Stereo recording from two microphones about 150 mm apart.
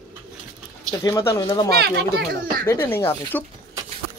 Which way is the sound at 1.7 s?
90° right.